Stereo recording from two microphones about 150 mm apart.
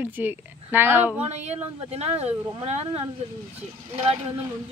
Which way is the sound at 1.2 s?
45° right (ahead or behind).